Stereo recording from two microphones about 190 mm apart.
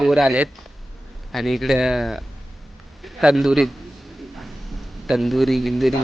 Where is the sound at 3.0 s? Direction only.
Centre (ahead or behind).